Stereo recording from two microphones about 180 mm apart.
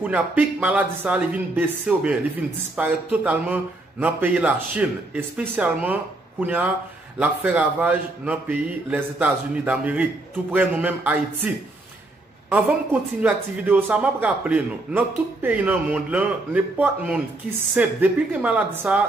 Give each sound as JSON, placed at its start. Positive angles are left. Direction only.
{"t": 0.0, "sound": "speech", "side_deg": -10}
{"t": 13.2, "sound": "speech", "side_deg": -10}